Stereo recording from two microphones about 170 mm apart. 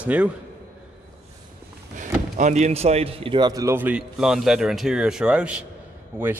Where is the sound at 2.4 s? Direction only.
45° right (ahead or behind).